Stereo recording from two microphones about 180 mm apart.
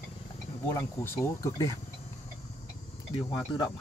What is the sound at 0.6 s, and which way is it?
Speech, 15° left (ahead or behind).